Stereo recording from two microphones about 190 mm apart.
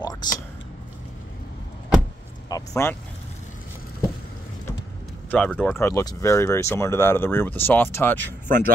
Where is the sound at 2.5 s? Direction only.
15° left (ahead or behind).